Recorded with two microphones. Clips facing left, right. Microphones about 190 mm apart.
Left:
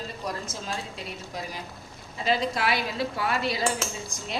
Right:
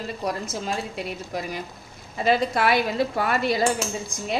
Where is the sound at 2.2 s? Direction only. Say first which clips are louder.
Right 5 dB; 55° right (ahead or behind).